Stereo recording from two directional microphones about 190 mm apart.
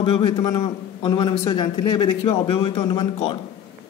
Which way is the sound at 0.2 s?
20° left (ahead or behind).